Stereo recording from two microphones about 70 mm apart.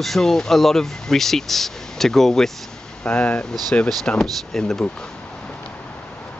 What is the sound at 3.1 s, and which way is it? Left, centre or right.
Speech, left.